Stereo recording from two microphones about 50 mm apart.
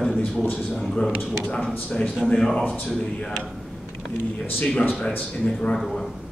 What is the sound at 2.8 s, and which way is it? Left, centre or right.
Speech, centre.